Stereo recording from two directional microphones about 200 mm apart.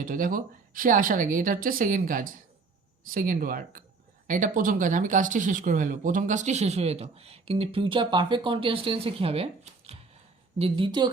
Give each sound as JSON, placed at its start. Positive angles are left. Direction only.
{"t": 0.0, "sound": "a woman's voice", "side_deg": -45}